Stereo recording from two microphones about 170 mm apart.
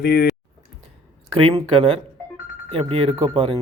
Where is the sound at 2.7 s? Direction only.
35° right (ahead or behind).